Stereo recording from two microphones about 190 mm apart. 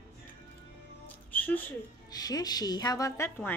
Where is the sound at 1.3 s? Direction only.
10° left (ahead or behind).